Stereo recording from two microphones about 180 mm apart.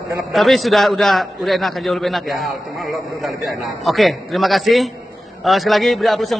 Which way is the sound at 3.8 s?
Centre (ahead or behind).